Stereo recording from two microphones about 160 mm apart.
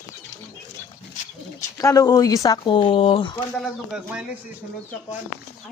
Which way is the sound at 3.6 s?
5° right (ahead or behind).